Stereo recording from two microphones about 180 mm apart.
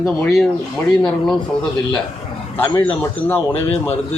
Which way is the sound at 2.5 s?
10° left (ahead or behind).